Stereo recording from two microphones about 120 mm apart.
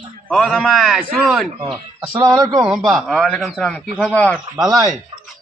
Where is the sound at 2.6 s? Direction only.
5° right (ahead or behind); by 4.3 s 10° left (ahead or behind).